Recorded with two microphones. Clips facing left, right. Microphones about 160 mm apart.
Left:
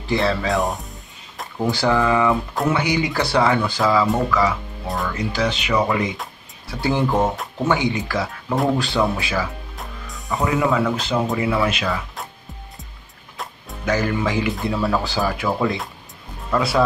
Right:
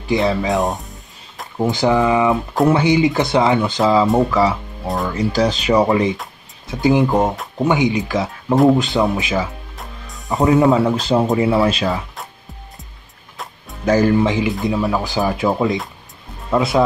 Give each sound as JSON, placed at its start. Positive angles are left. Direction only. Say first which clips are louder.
{"t": 0.0, "sound": "speech", "louder": "right 3 dB", "side_deg": -15}
{"t": 6.7, "sound": "speech", "louder": "right 5 dB", "side_deg": -15}
{"t": 9.8, "sound": "music", "louder": "even", "side_deg": 0}
{"t": 10.2, "sound": "speech", "louder": "right 6 dB", "side_deg": -20}
{"t": 10.7, "sound": "speech", "louder": "right 5 dB", "side_deg": -30}
{"t": 13.8, "sound": "speech", "louder": "right 7 dB", "side_deg": -30}
{"t": 14.7, "sound": "speech", "louder": "right 2 dB", "side_deg": -15}